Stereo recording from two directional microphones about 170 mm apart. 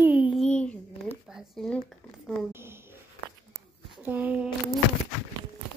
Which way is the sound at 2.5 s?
15° right (ahead or behind).